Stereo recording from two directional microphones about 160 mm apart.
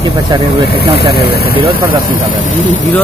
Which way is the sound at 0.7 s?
85° left.